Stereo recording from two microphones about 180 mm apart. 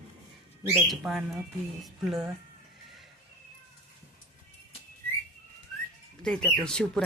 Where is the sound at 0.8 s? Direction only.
Centre (ahead or behind).